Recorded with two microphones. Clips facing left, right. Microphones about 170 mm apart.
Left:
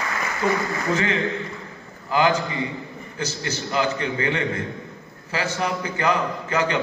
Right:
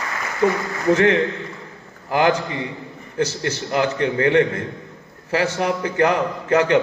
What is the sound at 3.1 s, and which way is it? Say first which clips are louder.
A man's voice: right 7 dB; 65° right (ahead or behind).